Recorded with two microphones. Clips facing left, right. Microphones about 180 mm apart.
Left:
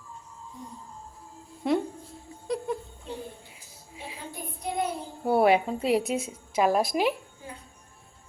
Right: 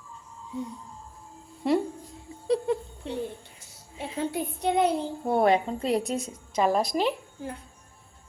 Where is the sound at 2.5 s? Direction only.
25° right (ahead or behind).